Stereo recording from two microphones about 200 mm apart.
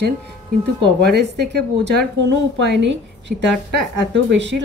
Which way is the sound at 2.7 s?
60° right (ahead or behind).